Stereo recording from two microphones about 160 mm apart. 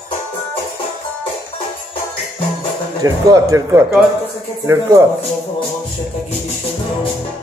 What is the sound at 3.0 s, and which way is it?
Speech, 25° right (ahead or behind).